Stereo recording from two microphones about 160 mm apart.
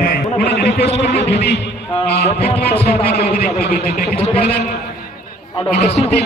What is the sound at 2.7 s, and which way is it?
Speech, 40° left (ahead or behind).